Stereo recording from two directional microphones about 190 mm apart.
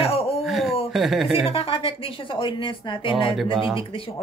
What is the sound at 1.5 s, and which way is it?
Speech, 30° left (ahead or behind).